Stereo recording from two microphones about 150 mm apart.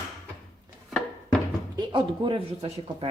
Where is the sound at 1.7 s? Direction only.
35° right (ahead or behind).